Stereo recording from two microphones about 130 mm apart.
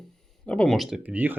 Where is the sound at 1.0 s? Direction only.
10° right (ahead or behind).